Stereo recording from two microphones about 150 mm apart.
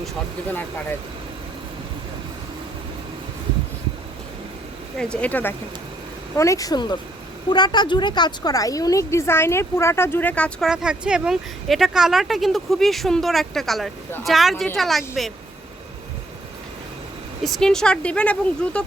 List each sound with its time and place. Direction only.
5.1 s a woman's voice: 10° left (ahead or behind)
10.7 s speech: 5° right (ahead or behind)
17.4 s speech: centre (ahead or behind)